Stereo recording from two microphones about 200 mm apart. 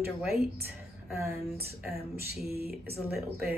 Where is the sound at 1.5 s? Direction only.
50° right (ahead or behind).